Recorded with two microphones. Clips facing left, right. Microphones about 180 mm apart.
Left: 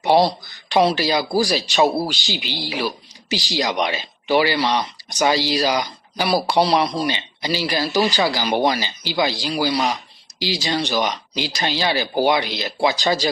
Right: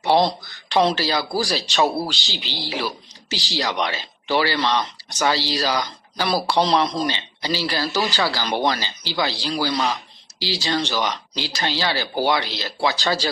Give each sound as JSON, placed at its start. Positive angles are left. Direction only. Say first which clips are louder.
{"t": 0.0, "sound": "speech", "louder": "left 2 dB", "side_deg": 15}